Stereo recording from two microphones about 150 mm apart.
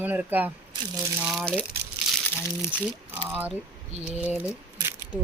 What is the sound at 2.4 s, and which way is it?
Speech, 20° left (ahead or behind).